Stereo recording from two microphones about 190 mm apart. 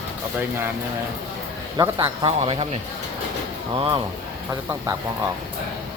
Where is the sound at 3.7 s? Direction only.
25° right (ahead or behind).